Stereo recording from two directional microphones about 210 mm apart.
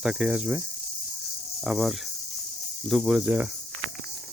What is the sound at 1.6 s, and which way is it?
Speech, centre (ahead or behind).